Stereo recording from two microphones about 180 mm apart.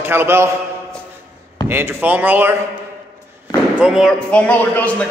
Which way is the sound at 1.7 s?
10° right (ahead or behind).